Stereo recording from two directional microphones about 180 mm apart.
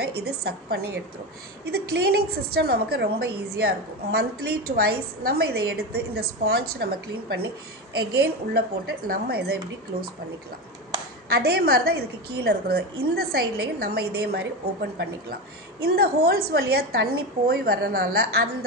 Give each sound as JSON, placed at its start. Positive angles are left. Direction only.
{"t": 0.0, "sound": "a woman's voice", "side_deg": -60}
{"t": 11.2, "sound": "a woman's voice", "side_deg": -60}